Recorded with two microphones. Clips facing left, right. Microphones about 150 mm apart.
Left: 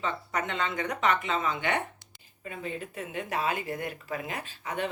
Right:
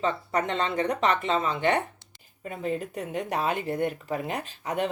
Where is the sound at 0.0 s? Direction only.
35° right (ahead or behind).